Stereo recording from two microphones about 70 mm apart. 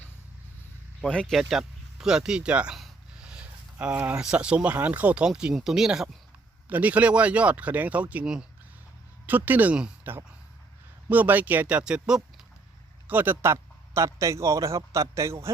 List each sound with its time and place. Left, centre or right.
1.0 s speech: centre
1.3 s speech: centre
3.2 s a sound: centre
4.2 s speech: centre
6.7 s speech: right
11.8 s speech: centre
13.1 s speech: right
13.4 s a man's voice: right